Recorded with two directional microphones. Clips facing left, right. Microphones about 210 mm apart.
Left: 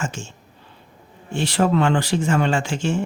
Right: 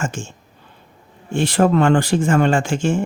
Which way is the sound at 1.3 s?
50° right (ahead or behind).